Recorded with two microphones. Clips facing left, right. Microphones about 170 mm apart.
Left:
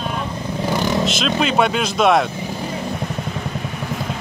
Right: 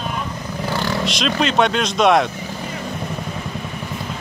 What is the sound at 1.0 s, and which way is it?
Speech, 5° left (ahead or behind).